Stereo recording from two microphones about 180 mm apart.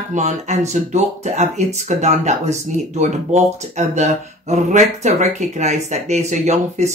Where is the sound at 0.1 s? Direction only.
40° right (ahead or behind).